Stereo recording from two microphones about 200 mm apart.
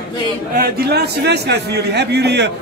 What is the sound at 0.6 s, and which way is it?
A man's voice, 55° right (ahead or behind).